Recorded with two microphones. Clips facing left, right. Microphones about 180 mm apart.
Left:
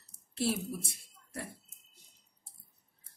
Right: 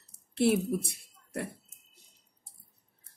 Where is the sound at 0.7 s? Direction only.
60° right (ahead or behind).